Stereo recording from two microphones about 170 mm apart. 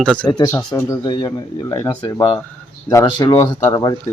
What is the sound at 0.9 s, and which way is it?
Speech, 25° left (ahead or behind).